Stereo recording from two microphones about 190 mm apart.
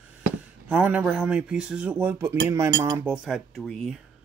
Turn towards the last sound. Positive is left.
turn(degrees=5)  # may be behind; listen again after turning